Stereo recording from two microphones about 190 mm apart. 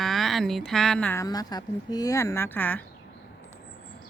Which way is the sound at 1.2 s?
20° left (ahead or behind).